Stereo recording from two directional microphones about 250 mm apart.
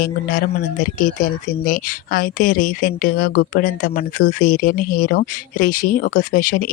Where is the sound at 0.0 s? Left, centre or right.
Left.